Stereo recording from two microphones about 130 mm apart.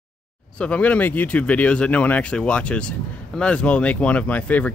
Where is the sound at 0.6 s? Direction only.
10° left (ahead or behind).